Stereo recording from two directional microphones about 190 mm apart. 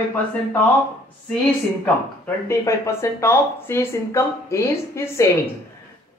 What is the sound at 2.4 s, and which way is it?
Speech, 15° left (ahead or behind).